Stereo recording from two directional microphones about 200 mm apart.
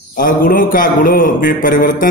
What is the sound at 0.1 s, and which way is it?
A man's voice, 45° left (ahead or behind).